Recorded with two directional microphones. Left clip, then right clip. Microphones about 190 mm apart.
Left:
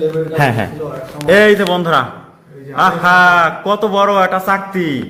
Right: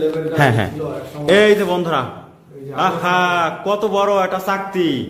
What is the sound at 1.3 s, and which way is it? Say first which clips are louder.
A man's voice: left 3 dB; 5° left (ahead or behind).